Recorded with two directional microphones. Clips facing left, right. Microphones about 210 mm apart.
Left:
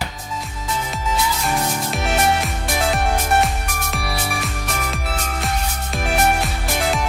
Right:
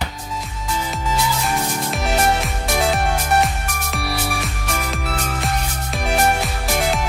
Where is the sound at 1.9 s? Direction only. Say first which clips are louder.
Right 1 dB; centre (ahead or behind).